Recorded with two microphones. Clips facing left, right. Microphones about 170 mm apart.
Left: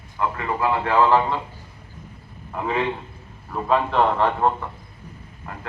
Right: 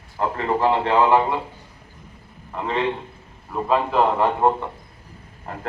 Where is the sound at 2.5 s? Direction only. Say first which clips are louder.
Right 1 dB; 5° left (ahead or behind); by 4.6 s 15° right (ahead or behind).